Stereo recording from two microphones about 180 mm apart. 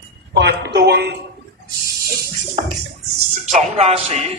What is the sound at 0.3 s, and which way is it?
Speech, 75° right (ahead or behind).